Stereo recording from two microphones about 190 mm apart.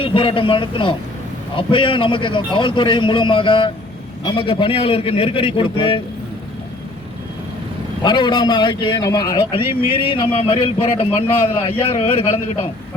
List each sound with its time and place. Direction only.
0.0 s a man's voice: 25° left (ahead or behind)
8.0 s a man's voice: 25° left (ahead or behind)